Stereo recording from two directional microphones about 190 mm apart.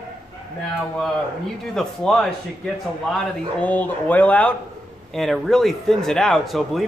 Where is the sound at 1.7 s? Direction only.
5° left (ahead or behind).